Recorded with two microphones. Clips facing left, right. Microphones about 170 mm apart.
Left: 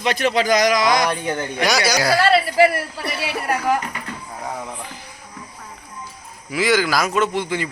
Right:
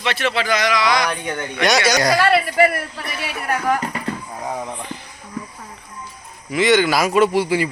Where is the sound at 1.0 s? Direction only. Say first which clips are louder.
Left 2 dB; 30° left (ahead or behind).